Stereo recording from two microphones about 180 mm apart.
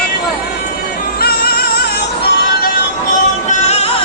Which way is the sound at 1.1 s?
60° left (ahead or behind).